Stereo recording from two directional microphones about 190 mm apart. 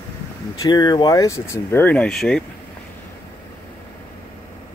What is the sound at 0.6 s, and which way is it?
Speech, 20° left (ahead or behind).